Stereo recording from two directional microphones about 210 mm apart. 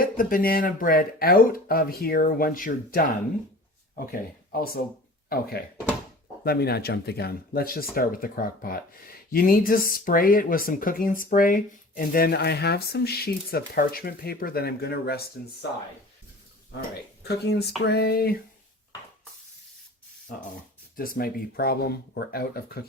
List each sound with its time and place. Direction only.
0.0 s speech: 40° left (ahead or behind)
17.2 s speech: 50° left (ahead or behind)
20.9 s speech: 45° left (ahead or behind)